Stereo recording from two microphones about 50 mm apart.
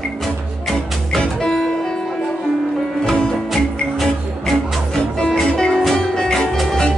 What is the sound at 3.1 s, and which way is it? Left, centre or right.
Music, centre.